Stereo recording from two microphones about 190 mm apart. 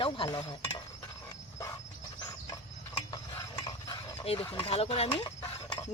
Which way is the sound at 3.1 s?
20° left (ahead or behind).